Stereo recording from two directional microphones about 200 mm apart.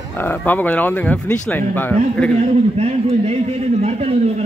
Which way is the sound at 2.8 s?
30° right (ahead or behind).